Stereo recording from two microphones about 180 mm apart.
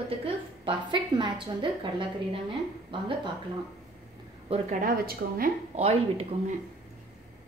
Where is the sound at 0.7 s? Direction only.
25° right (ahead or behind).